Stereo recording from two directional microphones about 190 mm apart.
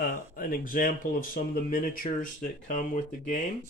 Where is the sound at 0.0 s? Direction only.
45° left (ahead or behind).